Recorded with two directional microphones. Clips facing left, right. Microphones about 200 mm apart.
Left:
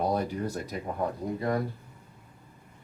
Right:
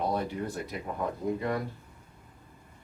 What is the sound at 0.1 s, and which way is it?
Speech, 40° left (ahead or behind).